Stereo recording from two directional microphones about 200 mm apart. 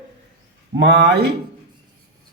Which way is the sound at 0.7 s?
60° right (ahead or behind).